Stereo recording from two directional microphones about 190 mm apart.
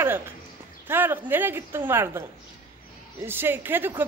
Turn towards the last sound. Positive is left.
turn(degrees=-10)  # may be behind; listen again after turning